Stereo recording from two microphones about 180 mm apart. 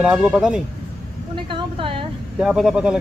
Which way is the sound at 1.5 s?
30° right (ahead or behind).